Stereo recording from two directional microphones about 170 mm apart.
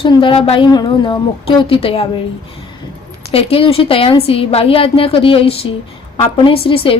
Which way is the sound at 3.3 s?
35° left (ahead or behind).